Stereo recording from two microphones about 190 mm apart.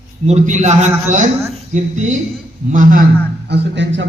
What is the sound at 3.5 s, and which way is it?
Speech, 70° right (ahead or behind).